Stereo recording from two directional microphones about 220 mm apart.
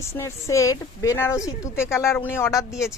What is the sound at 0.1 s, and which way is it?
Speech, 15° left (ahead or behind).